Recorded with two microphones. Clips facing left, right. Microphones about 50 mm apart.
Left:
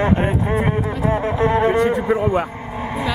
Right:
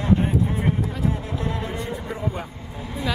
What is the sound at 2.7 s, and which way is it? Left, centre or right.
Vehicle, left.